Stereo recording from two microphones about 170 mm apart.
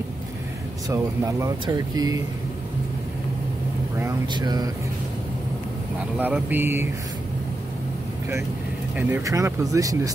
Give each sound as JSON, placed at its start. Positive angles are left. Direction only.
{"t": 0.8, "sound": "speech", "side_deg": -15}
{"t": 4.3, "sound": "speech", "side_deg": -25}
{"t": 5.9, "sound": "speech", "side_deg": -10}
{"t": 8.9, "sound": "speech", "side_deg": -15}